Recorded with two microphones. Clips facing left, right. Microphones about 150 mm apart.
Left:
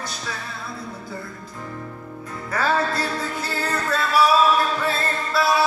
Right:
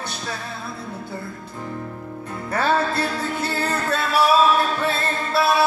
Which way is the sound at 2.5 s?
25° right (ahead or behind).